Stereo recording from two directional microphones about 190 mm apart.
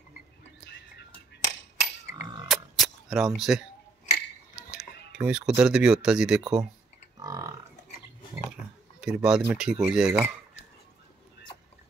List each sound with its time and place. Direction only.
2.4 s a sound: centre (ahead or behind)
4.6 s cutlery: 5° right (ahead or behind)
5.1 s speech: 5° right (ahead or behind)
7.2 s livestock: 15° right (ahead or behind)
9.0 s speech: 5° right (ahead or behind)